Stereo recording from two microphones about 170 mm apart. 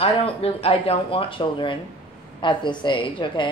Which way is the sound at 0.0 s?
35° left (ahead or behind).